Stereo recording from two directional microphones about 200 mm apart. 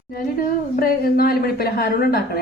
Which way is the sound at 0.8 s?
50° left (ahead or behind).